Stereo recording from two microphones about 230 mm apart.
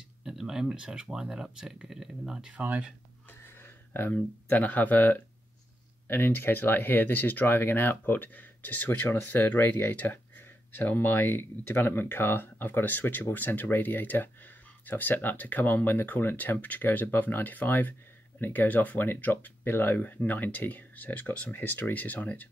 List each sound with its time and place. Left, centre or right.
0.2 s speech: centre
3.3 s a sound: centre
6.0 s speech: centre